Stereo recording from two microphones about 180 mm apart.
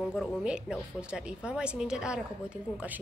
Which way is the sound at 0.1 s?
5° right (ahead or behind).